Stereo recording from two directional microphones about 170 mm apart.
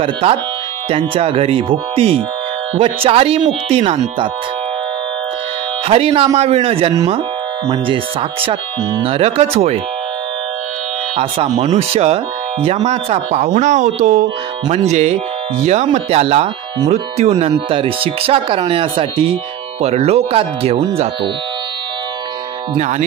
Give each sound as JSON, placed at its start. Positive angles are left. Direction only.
{"t": 0.0, "sound": "speech", "side_deg": -35}
{"t": 5.9, "sound": "speech", "side_deg": -35}
{"t": 11.1, "sound": "speech", "side_deg": -35}
{"t": 22.8, "sound": "speech", "side_deg": -45}